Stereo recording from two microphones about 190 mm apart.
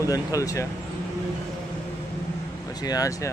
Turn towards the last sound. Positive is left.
turn(degrees=15)  # may be behind; listen again after turning